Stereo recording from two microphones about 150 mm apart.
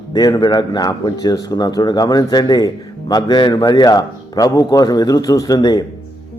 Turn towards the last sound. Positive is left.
turn(degrees=25)  # may be behind; listen again after turning